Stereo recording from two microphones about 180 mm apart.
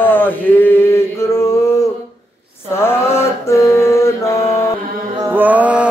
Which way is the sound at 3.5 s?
15° left (ahead or behind).